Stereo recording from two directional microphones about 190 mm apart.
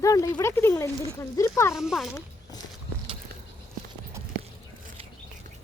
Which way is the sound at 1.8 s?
Centre (ahead or behind).